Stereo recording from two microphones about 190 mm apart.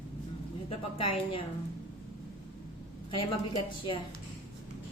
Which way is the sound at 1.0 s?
30° left (ahead or behind).